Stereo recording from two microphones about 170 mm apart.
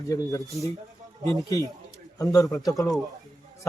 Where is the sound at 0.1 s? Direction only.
20° left (ahead or behind).